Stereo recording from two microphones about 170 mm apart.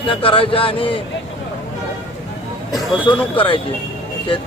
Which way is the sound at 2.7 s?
30° left (ahead or behind).